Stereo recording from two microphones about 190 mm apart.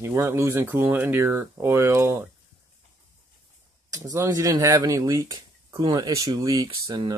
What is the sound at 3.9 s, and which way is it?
Speech, 15° right (ahead or behind).